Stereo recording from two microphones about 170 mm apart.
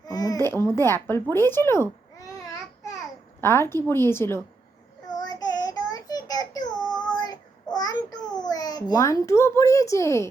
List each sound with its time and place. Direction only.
0.0 s a sound: 20° left (ahead or behind)
0.4 s speech: 15° left (ahead or behind)
3.4 s speech: 15° left (ahead or behind)
5.0 s child singing: 25° left (ahead or behind)
8.4 s a child's voice: 25° left (ahead or behind)